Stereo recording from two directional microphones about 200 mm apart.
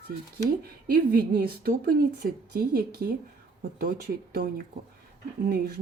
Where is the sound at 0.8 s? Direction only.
50° right (ahead or behind).